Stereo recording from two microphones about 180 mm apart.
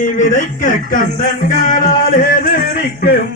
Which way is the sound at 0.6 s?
45° left (ahead or behind).